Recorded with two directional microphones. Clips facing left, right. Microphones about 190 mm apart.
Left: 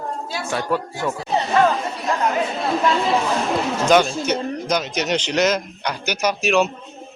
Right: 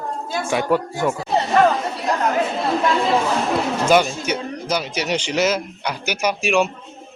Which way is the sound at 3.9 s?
10° right (ahead or behind).